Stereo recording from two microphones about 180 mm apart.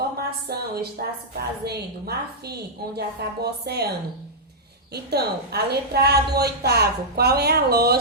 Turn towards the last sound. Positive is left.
turn(degrees=-60)  # may be behind; listen again after turning